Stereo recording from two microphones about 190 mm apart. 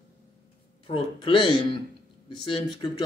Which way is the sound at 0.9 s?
25° left (ahead or behind).